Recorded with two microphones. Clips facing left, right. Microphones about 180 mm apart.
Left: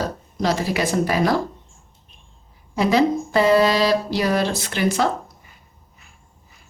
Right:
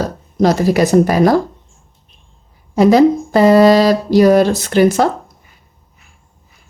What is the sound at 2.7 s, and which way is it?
Speech, 40° right (ahead or behind).